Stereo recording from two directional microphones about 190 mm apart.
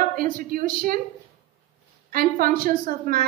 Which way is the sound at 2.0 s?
50° right (ahead or behind).